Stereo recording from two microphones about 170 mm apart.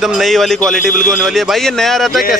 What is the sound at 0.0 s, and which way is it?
A man's voice, centre (ahead or behind).